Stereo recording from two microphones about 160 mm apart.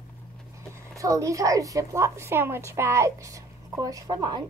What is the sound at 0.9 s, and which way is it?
A woman's voice, 20° right (ahead or behind).